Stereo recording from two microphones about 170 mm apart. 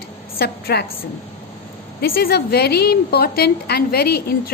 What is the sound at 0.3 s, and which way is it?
Speech, 70° left (ahead or behind).